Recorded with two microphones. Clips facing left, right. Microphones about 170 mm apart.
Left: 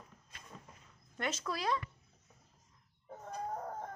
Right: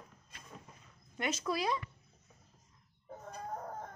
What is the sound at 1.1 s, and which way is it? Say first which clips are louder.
Speech: right 3 dB; 10° right (ahead or behind).